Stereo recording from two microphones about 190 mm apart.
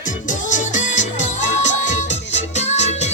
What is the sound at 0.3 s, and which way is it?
Music, 40° left (ahead or behind).